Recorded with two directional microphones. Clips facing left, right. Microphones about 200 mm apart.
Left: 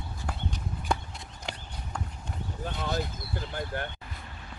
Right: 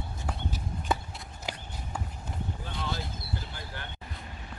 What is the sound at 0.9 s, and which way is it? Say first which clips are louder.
Clip-clop: even; 5° right (ahead or behind).